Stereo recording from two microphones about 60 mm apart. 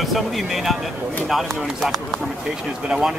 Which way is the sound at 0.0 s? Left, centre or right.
Centre.